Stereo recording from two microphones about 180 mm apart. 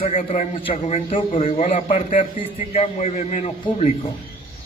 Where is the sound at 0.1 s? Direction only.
40° left (ahead or behind).